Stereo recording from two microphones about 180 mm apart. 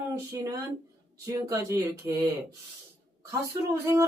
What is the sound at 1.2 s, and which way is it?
Speech, 20° right (ahead or behind).